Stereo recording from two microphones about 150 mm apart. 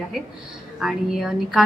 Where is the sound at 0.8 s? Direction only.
Centre (ahead or behind).